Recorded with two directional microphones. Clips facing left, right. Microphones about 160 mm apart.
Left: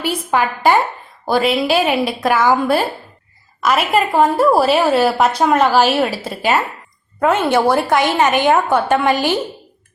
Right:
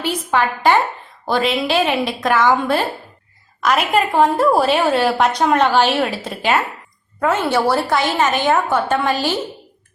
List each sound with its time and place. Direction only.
0.0 s a woman's voice: 10° left (ahead or behind)
7.2 s a woman's voice: 20° left (ahead or behind)